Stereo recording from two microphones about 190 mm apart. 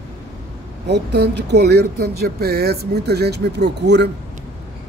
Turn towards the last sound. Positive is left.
turn(degrees=-65)  # may be behind; listen again after turning